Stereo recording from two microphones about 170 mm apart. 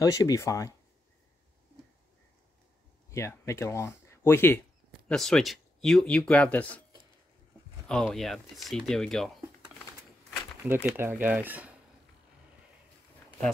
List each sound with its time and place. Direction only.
0.0 s speech: 20° left (ahead or behind)
3.1 s speech: 15° left (ahead or behind)
5.0 s speech: 5° left (ahead or behind)
7.9 s speech: 5° left (ahead or behind)
10.6 s speech: 15° right (ahead or behind)